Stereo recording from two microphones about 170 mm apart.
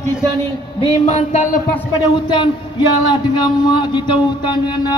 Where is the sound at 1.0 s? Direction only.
40° left (ahead or behind).